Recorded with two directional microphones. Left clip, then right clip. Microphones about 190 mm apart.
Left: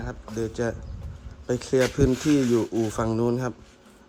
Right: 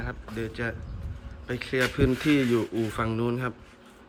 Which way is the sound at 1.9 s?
20° left (ahead or behind).